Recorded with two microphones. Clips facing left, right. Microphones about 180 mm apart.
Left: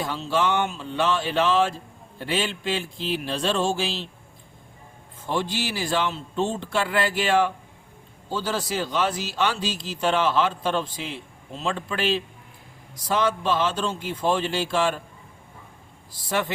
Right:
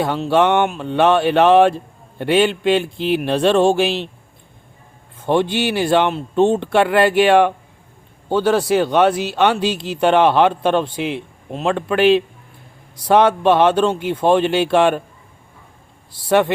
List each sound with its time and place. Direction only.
0.0 s speech: 65° right (ahead or behind)
5.2 s speech: 65° right (ahead or behind)
16.1 s speech: 65° right (ahead or behind)